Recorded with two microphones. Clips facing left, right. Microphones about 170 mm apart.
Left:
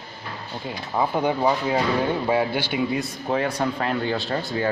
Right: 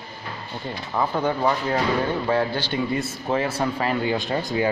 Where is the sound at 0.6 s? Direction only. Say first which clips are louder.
Left 1 dB; 10° left (ahead or behind).